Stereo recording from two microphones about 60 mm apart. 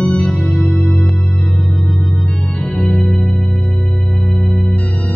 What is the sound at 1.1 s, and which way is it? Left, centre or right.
Organ, centre.